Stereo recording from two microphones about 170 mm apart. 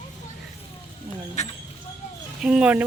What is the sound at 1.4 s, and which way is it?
Speech, 40° left (ahead or behind).